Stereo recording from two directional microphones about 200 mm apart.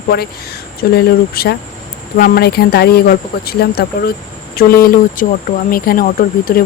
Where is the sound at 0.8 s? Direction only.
50° left (ahead or behind).